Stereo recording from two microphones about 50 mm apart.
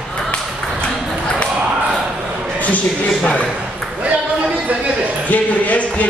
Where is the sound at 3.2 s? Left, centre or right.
Left.